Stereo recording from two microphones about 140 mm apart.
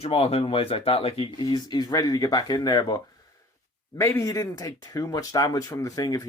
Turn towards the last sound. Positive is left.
turn(degrees=25)  # may be behind; listen again after turning